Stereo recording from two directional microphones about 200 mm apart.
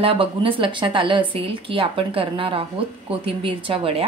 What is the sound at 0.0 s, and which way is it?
A woman's voice, 25° right (ahead or behind).